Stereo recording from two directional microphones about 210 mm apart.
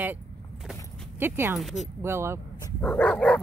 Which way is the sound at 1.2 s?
10° right (ahead or behind).